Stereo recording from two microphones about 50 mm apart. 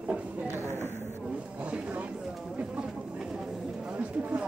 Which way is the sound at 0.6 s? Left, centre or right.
Right.